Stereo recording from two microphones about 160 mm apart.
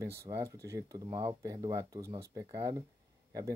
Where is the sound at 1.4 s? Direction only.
20° right (ahead or behind).